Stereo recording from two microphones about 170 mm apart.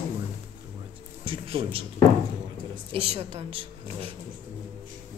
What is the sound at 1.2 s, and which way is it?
Speech, 30° right (ahead or behind).